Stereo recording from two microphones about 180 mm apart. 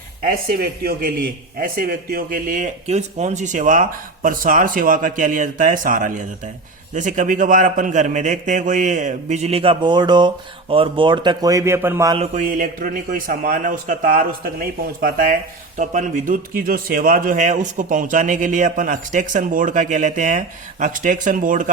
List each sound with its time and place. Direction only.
0.2 s a man's voice: 55° right (ahead or behind); by 12.1 s 15° right (ahead or behind)
12.1 s a man's voice: 40° right (ahead or behind)
15.8 s a man's voice: 45° right (ahead or behind)